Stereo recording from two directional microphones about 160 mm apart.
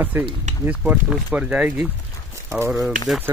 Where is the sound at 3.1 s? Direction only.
5° right (ahead or behind).